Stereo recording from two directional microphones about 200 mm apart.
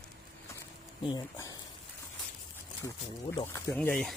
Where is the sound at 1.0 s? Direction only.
20° left (ahead or behind).